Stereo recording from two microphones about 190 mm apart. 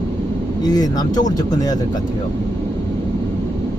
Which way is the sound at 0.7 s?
20° left (ahead or behind).